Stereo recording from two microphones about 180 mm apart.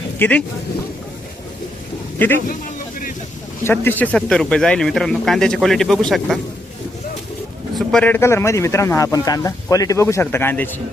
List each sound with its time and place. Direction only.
0.2 s speech: 10° left (ahead or behind)
2.1 s a man's voice: 10° left (ahead or behind)
3.6 s speech: 10° left (ahead or behind)
7.8 s speech: centre (ahead or behind)